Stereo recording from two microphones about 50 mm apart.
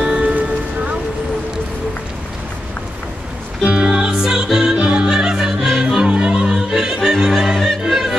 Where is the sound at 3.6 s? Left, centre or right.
Centre.